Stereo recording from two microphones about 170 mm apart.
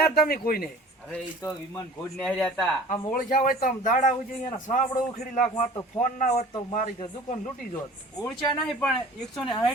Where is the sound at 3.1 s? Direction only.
55° left (ahead or behind).